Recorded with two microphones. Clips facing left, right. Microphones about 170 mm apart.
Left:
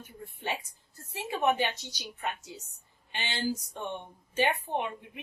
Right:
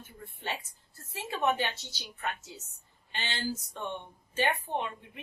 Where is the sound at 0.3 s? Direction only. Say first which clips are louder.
Left 2 dB; 15° left (ahead or behind).